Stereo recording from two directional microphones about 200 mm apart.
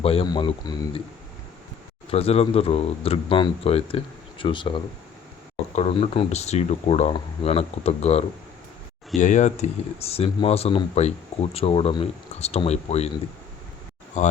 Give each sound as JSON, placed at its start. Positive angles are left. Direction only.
{"t": 0.0, "sound": "speech", "side_deg": 30}
{"t": 2.0, "sound": "speech", "side_deg": 30}
{"t": 14.2, "sound": "speech", "side_deg": 35}